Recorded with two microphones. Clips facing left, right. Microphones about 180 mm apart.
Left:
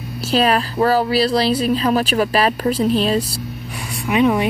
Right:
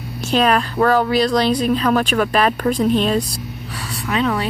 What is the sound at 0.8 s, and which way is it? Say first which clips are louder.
Speech: even; 35° left (ahead or behind).